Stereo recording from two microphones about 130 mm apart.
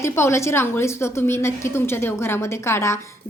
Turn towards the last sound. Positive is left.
turn(degrees=20)  # may be behind; listen again after turning